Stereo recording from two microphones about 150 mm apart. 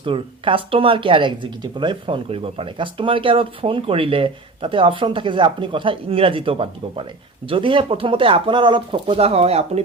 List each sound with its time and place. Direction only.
0.0 s speech: 35° right (ahead or behind)